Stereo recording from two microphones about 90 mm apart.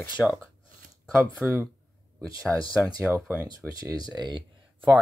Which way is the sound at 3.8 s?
50° right (ahead or behind).